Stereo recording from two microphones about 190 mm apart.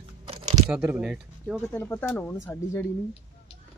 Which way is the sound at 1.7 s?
10° left (ahead or behind).